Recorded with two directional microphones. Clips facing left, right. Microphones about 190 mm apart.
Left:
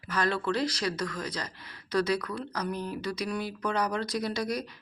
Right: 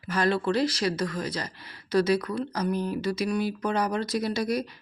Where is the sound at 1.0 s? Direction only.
30° right (ahead or behind).